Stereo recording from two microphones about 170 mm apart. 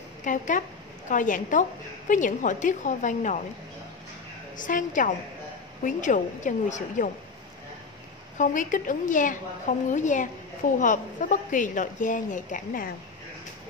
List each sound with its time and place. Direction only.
0.2 s a woman's voice: 50° left (ahead or behind)
4.6 s a woman's voice: 50° left (ahead or behind)
8.4 s a woman's voice: 50° left (ahead or behind)